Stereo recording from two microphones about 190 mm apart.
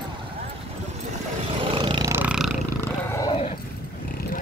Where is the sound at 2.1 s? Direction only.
5° right (ahead or behind).